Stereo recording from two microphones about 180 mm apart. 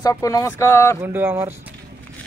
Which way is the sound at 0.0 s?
20° left (ahead or behind).